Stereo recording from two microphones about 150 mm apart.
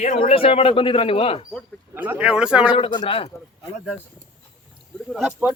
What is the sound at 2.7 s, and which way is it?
Speech, 35° left (ahead or behind).